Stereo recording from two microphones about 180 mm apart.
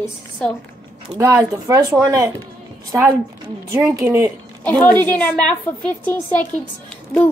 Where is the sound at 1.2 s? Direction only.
20° right (ahead or behind).